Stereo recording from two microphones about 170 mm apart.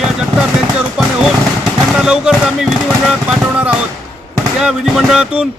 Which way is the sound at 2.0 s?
5° right (ahead or behind).